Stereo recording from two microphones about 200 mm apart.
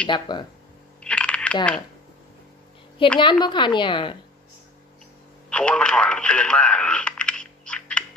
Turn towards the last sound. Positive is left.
turn(degrees=5)  # may be behind; listen again after turning